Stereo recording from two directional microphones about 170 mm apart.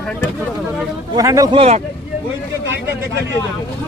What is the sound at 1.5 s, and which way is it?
Speech, 35° right (ahead or behind).